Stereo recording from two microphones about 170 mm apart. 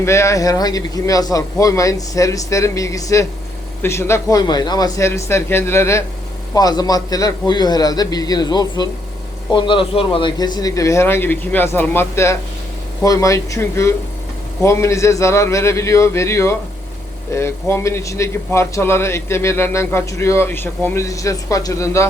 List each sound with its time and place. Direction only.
0.0 s speech: 15° left (ahead or behind)